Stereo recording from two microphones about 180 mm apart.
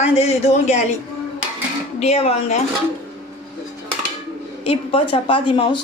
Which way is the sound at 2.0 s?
35° left (ahead or behind).